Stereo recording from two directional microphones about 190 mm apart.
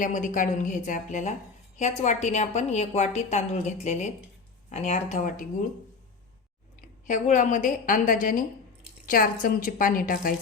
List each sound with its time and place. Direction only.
0.0 s a woman's voice: 40° left (ahead or behind)
6.8 s a woman's voice: 40° left (ahead or behind)